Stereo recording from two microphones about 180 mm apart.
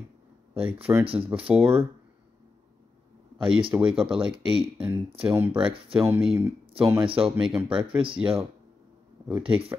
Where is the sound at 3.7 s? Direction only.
15° right (ahead or behind).